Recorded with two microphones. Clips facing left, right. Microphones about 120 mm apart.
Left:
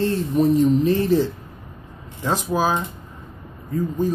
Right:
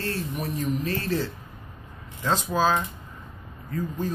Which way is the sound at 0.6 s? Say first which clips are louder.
Left 11 dB; 15° left (ahead or behind).